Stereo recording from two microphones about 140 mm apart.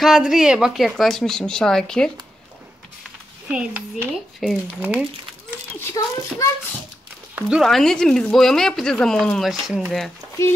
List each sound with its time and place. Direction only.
0.0 s speech: 5° right (ahead or behind)
3.4 s speech: 10° right (ahead or behind)
5.8 s a child's voice: 20° left (ahead or behind)
7.3 s speech: 5° right (ahead or behind)